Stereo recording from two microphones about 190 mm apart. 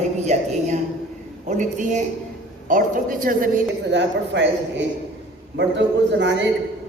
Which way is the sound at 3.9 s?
70° right (ahead or behind).